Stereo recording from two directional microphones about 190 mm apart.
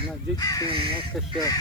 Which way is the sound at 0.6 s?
30° right (ahead or behind).